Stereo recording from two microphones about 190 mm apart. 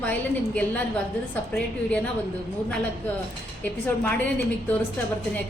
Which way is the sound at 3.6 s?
10° left (ahead or behind).